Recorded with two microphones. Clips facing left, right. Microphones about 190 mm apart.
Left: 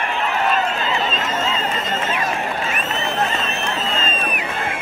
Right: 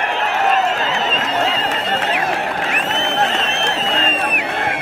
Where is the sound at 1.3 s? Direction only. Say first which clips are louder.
Right 3 dB; 75° right (ahead or behind).